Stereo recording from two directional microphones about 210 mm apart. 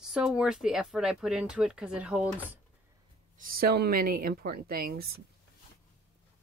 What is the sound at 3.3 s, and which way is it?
Speech, 45° right (ahead or behind).